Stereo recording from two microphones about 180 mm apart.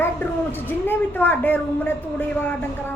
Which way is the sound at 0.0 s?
10° left (ahead or behind).